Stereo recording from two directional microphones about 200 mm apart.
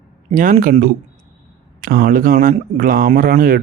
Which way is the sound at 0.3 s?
40° right (ahead or behind).